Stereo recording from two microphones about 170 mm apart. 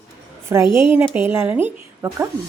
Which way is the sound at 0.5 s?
15° right (ahead or behind).